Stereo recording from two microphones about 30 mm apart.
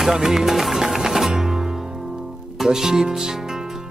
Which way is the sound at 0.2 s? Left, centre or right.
Centre.